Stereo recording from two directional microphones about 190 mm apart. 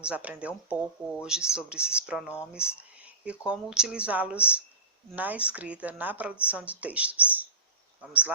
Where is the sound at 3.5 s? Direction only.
5° right (ahead or behind).